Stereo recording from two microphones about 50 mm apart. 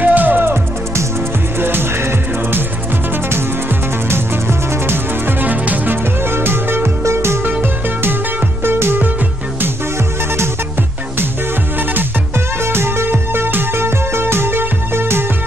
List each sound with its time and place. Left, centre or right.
0.0 s music: right
1.6 s music: right
4.1 s music: right
6.2 s music: right
7.1 s music: right
8.6 s music: right
12.6 s music: right